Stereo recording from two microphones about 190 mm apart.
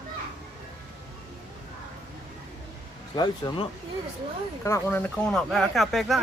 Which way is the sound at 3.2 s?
20° left (ahead or behind).